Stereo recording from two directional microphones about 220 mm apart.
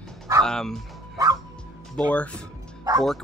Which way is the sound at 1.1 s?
15° right (ahead or behind).